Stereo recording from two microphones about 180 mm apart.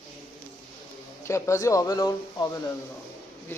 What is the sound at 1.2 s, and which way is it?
A man's voice, 15° left (ahead or behind).